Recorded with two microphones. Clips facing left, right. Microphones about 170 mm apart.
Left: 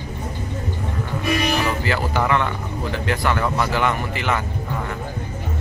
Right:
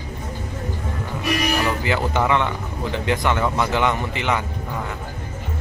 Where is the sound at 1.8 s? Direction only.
15° right (ahead or behind).